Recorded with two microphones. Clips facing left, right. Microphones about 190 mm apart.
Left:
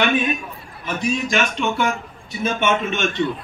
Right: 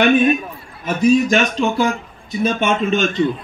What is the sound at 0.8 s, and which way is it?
A man's voice, 35° right (ahead or behind).